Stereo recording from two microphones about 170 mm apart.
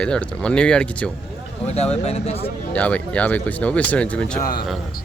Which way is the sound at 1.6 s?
40° left (ahead or behind).